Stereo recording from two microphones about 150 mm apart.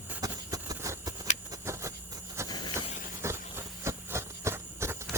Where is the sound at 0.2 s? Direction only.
25° right (ahead or behind).